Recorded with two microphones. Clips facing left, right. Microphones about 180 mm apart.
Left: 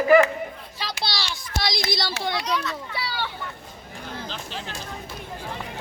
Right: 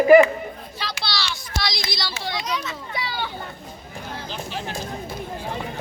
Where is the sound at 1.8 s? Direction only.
55° left (ahead or behind).